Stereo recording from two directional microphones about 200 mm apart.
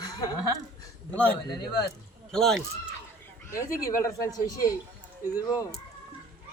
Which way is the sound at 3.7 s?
15° left (ahead or behind).